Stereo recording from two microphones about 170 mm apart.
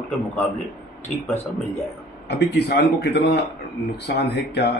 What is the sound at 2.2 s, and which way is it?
A man's voice, 85° left.